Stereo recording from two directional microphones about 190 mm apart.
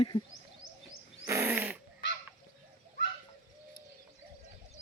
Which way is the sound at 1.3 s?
10° right (ahead or behind).